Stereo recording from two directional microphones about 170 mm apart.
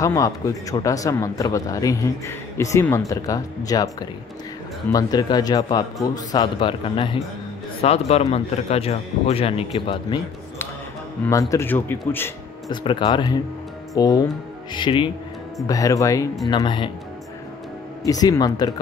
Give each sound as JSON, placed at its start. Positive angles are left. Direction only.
{"t": 0.0, "sound": "speech", "side_deg": 20}
{"t": 11.2, "sound": "speech", "side_deg": 20}
{"t": 12.1, "sound": "music", "side_deg": 15}
{"t": 12.8, "sound": "speech", "side_deg": 30}
{"t": 18.0, "sound": "speech", "side_deg": 20}